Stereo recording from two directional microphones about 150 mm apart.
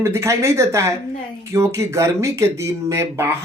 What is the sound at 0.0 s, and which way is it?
Speech, 20° right (ahead or behind).